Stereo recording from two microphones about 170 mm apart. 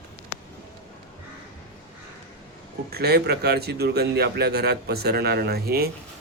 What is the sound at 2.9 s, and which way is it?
A man's voice, 70° right (ahead or behind).